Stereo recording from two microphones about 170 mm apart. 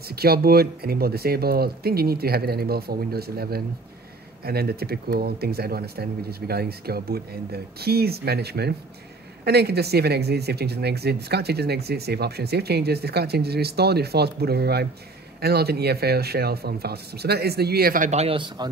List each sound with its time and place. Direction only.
0.1 s speech: 65° right (ahead or behind); by 18.7 s 30° right (ahead or behind)